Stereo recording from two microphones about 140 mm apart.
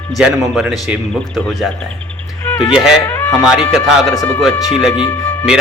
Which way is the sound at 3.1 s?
15° left (ahead or behind).